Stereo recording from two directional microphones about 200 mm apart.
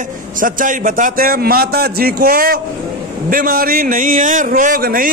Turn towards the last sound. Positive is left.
turn(degrees=-45)  # may be behind; listen again after turning